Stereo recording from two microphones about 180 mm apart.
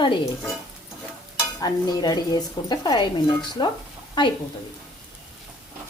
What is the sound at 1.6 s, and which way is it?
Dishes, 20° left (ahead or behind).